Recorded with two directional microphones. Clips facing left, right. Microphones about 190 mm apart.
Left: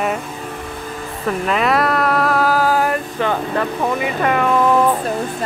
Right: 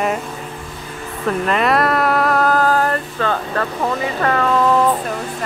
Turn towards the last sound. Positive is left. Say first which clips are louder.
# even
turn(degrees=15)  # may be behind; listen again after turning